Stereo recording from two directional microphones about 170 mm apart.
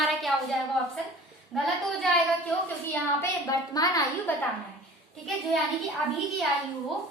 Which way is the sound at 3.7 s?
20° left (ahead or behind).